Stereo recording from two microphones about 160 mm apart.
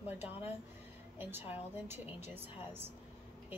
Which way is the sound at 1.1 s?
15° right (ahead or behind).